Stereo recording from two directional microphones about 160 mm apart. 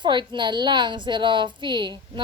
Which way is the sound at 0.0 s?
30° right (ahead or behind).